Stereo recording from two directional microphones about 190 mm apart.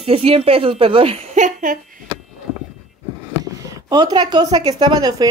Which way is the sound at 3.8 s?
20° right (ahead or behind).